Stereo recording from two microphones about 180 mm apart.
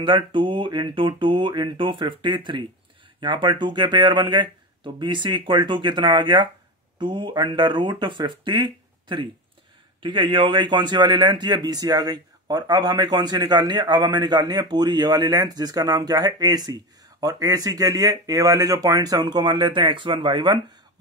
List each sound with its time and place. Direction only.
0.0 s a man's voice: 25° right (ahead or behind)